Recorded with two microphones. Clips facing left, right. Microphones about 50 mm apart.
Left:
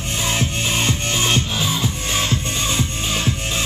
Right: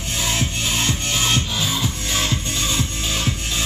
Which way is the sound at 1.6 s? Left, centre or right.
Centre.